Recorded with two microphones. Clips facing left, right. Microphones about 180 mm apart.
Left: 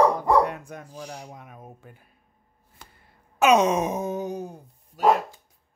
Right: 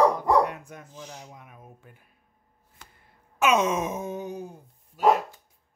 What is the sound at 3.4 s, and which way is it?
Wail, 35° left (ahead or behind).